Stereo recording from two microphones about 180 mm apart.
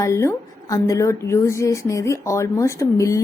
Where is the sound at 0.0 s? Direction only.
15° left (ahead or behind).